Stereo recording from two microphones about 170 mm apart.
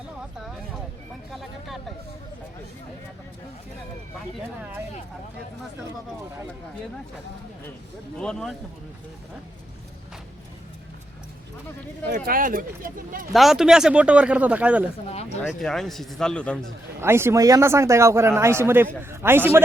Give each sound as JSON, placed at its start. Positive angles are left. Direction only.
{"t": 1.3, "sound": "speech", "side_deg": 0}
{"t": 8.2, "sound": "speech", "side_deg": 5}
{"t": 12.0, "sound": "speech", "side_deg": -60}
{"t": 13.3, "sound": "a man's voice", "side_deg": 0}
{"t": 15.0, "sound": "speech", "side_deg": 40}
{"t": 15.4, "sound": "speech", "side_deg": 5}
{"t": 17.0, "sound": "a man's voice", "side_deg": -15}